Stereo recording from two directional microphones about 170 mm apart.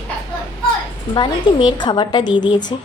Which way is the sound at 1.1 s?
25° left (ahead or behind).